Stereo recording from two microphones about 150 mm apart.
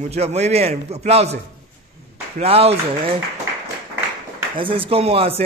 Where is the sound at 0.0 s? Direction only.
45° right (ahead or behind).